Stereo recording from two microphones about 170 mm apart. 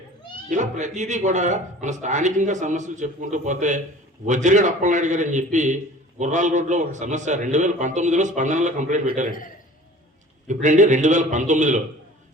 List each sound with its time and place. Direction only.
0.5 s a man's voice: 45° right (ahead or behind)
10.4 s a man's voice: 45° right (ahead or behind)